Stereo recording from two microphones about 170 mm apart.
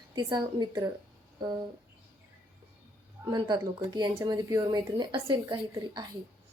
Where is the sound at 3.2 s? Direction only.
25° right (ahead or behind).